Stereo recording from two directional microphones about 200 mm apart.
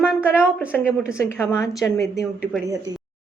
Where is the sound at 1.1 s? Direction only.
10° left (ahead or behind).